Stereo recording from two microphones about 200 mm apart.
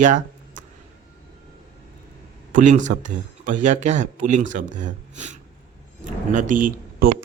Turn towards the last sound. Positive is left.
turn(degrees=-45)  # may be behind; listen again after turning